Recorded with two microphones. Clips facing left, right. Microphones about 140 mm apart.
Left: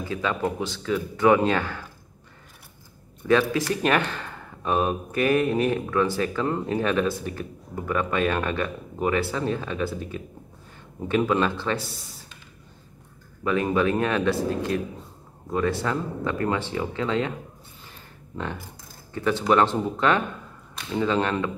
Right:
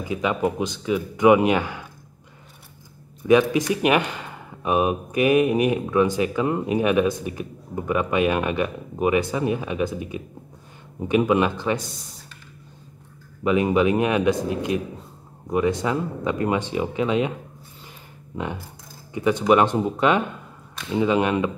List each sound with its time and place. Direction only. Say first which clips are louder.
0.0 s speech: right 3 dB; 15° right (ahead or behind)
3.3 s speech: right 4 dB; 15° right (ahead or behind)
13.4 s speech: right 4 dB; 15° right (ahead or behind)
18.3 s speech: right 3 dB; 15° right (ahead or behind)